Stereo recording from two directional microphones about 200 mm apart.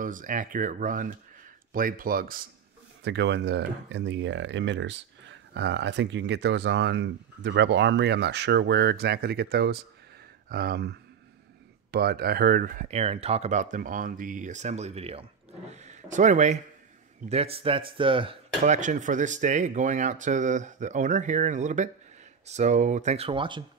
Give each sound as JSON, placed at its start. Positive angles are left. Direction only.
{"t": 0.0, "sound": "speech", "side_deg": -40}
{"t": 3.0, "sound": "speech", "side_deg": -60}